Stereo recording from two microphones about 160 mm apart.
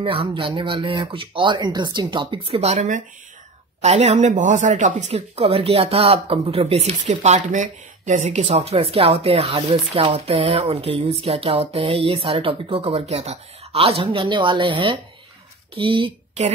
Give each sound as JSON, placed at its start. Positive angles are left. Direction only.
{"t": 0.0, "sound": "speech", "side_deg": -35}